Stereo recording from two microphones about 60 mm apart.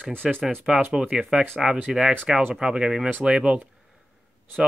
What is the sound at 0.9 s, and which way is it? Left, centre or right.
Speech, centre.